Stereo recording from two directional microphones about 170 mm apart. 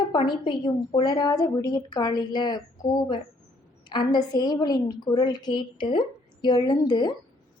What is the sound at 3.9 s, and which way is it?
A woman's voice, 25° left (ahead or behind).